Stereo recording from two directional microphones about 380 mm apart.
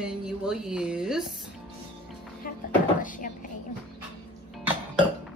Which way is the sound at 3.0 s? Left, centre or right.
Left.